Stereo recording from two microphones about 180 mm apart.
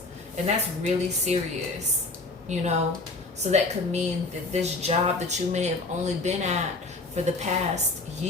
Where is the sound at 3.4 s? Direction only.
40° right (ahead or behind).